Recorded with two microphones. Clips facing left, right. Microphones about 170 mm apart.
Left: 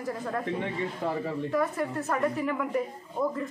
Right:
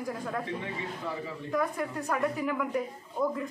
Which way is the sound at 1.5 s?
Centre (ahead or behind).